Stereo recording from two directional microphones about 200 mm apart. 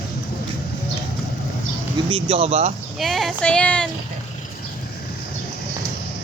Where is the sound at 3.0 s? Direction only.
Centre (ahead or behind).